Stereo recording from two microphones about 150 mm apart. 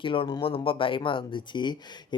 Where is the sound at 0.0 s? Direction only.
35° left (ahead or behind).